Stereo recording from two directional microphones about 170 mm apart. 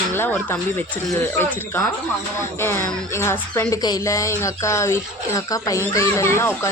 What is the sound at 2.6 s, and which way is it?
Speech, 15° left (ahead or behind).